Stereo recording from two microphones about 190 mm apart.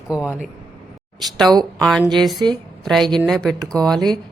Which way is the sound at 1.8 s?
5° left (ahead or behind).